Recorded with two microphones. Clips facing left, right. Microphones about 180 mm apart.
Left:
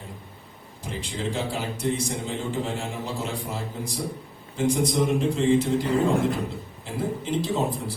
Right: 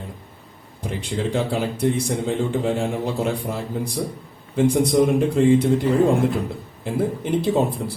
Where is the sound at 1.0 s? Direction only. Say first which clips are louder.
Right 6 dB; 60° right (ahead or behind).